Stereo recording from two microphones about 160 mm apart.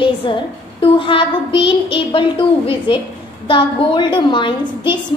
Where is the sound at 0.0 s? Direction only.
30° left (ahead or behind).